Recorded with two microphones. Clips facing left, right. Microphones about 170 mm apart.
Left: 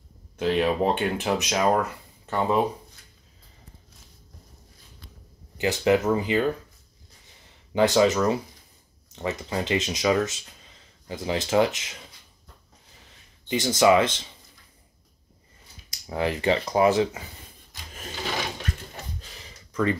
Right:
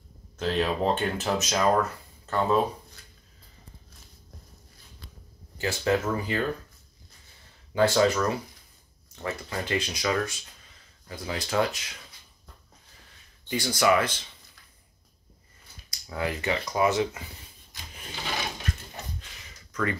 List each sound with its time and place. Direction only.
0.4 s speech: 10° left (ahead or behind)
5.6 s speech: 20° left (ahead or behind)
7.7 s speech: 20° left (ahead or behind)
13.5 s speech: 25° left (ahead or behind)
16.1 s speech: 25° left (ahead or behind)
19.7 s speech: 25° left (ahead or behind)